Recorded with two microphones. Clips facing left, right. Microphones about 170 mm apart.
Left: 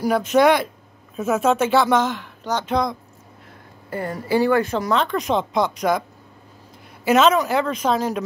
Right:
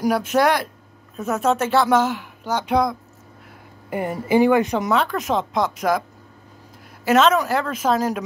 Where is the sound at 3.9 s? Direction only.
20° right (ahead or behind).